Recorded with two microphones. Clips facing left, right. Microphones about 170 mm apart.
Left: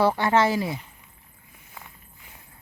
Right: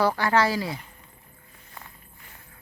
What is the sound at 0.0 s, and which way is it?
Speech, 25° left (ahead or behind).